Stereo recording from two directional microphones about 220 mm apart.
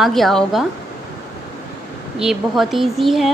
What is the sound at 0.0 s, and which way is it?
Speech, centre (ahead or behind).